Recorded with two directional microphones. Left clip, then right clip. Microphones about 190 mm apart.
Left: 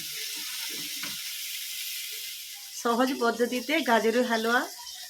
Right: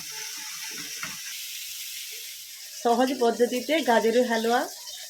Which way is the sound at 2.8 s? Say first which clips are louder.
Right 3 dB; centre (ahead or behind).